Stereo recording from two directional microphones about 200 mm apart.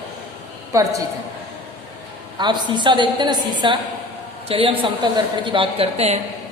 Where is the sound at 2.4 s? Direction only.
20° right (ahead or behind).